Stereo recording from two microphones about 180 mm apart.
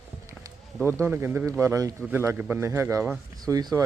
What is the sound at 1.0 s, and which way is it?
Speech, 10° right (ahead or behind).